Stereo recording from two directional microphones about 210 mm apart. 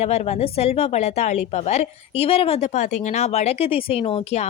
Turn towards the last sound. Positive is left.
turn(degrees=30)  # may be behind; listen again after turning